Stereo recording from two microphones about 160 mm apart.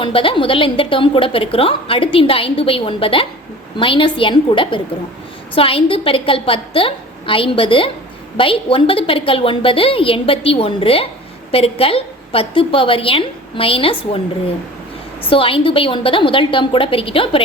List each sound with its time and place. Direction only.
0.0 s a woman's voice: 35° left (ahead or behind)